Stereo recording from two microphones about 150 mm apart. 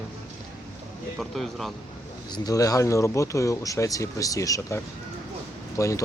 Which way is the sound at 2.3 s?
25° left (ahead or behind).